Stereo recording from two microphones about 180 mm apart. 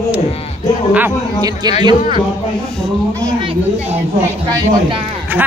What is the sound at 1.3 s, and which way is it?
Speech, 20° right (ahead or behind).